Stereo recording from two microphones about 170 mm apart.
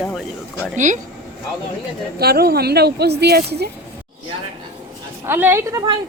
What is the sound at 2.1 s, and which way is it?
Speech, 65° right (ahead or behind).